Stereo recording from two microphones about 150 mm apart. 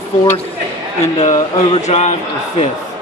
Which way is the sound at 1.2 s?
45° left (ahead or behind).